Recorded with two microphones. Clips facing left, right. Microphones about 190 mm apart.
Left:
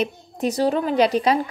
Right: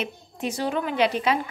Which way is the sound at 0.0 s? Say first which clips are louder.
Left 6 dB; 40° left (ahead or behind).